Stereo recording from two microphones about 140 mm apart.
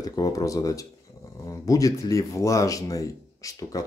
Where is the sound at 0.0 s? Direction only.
25° left (ahead or behind).